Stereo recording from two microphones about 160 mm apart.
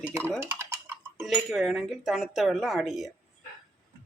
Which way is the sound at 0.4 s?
15° right (ahead or behind).